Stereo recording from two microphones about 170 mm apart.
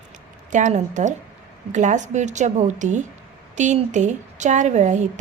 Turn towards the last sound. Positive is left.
turn(degrees=-45)  # may be behind; listen again after turning